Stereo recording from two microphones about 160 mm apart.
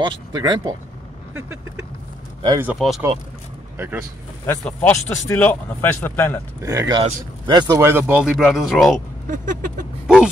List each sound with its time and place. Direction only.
0.0 s speech: 30° right (ahead or behind)
2.6 s speech: 5° right (ahead or behind)
4.5 s speech: 10° left (ahead or behind)
6.6 s speech: 20° right (ahead or behind); by 9.0 s centre (ahead or behind)
9.3 s a sound: 55° right (ahead or behind)
10.0 s speech: 5° right (ahead or behind)